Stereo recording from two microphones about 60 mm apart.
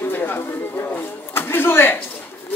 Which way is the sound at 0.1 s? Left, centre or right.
Left.